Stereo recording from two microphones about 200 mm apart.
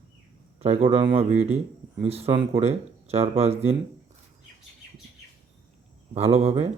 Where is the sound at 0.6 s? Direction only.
30° right (ahead or behind).